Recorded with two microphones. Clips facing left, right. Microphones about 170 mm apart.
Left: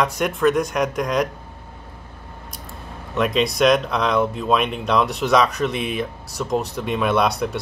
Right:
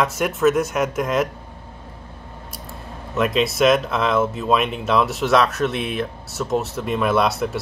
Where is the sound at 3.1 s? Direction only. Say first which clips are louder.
Even; centre (ahead or behind).